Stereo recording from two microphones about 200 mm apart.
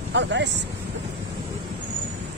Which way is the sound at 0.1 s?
60° right (ahead or behind).